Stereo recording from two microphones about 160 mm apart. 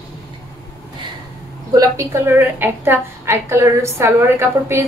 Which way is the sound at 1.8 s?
15° right (ahead or behind).